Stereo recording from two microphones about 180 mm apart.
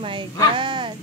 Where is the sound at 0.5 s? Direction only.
25° right (ahead or behind).